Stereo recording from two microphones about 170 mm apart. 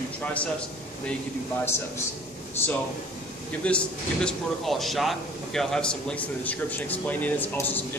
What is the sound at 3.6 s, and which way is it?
Speech, 5° left (ahead or behind).